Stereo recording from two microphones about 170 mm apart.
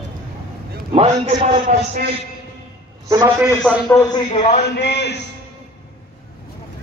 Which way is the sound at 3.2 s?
15° right (ahead or behind).